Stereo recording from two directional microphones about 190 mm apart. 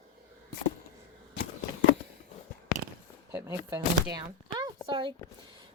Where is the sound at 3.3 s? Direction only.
15° right (ahead or behind).